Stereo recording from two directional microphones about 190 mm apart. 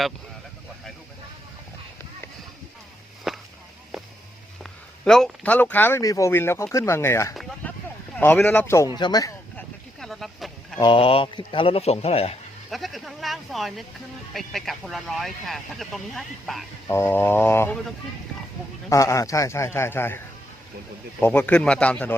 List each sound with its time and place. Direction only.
3.3 s a sound: centre (ahead or behind)
5.0 s speech: 5° left (ahead or behind)
7.6 s a sound: 10° left (ahead or behind)
8.1 s speech: 10° left (ahead or behind)
9.6 s a sound: centre (ahead or behind)
10.8 s speech: 25° left (ahead or behind)
12.7 s speech: centre (ahead or behind)
16.9 s speech: 10° left (ahead or behind)
18.9 s speech: 15° left (ahead or behind)